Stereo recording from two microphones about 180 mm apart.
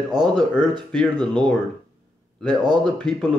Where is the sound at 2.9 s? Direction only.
5° left (ahead or behind).